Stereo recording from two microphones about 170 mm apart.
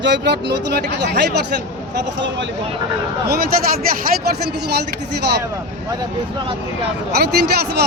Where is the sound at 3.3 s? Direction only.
65° right (ahead or behind).